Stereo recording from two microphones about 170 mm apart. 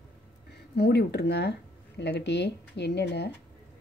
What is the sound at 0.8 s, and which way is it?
Speech, 75° left (ahead or behind).